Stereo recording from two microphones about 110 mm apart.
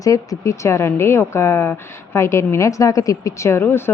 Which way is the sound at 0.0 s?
30° left (ahead or behind).